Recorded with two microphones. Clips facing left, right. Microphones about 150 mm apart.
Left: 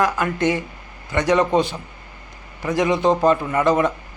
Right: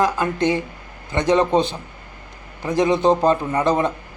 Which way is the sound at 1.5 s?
5° left (ahead or behind).